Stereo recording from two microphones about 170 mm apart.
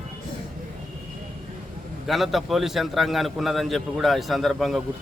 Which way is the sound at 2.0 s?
Centre (ahead or behind).